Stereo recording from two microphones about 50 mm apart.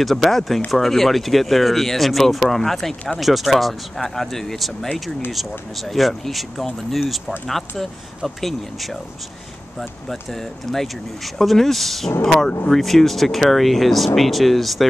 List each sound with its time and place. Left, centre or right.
0.0 s speech: centre